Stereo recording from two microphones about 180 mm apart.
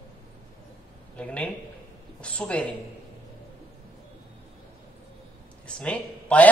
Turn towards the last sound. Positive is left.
turn(degrees=5)  # may be behind; listen again after turning